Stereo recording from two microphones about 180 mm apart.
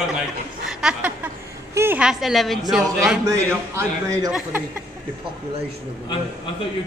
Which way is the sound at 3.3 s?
15° right (ahead or behind).